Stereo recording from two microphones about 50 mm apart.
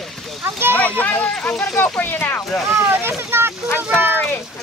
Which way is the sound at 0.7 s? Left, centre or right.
Left.